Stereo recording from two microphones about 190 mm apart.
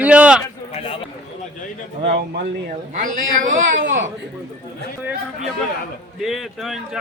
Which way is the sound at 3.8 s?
75° right (ahead or behind).